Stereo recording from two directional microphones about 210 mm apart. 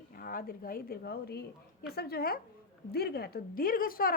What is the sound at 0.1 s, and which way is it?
A woman's voice, 45° left (ahead or behind).